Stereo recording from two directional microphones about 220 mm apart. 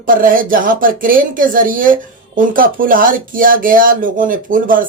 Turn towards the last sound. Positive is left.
turn(degrees=-40)  # may be behind; listen again after turning